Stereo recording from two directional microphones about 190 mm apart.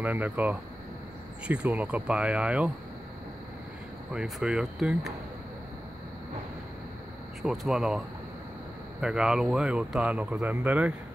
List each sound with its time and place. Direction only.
0.0 s speech: 10° right (ahead or behind)
4.1 s speech: 5° right (ahead or behind)
7.4 s speech: centre (ahead or behind)
9.0 s speech: 5° right (ahead or behind)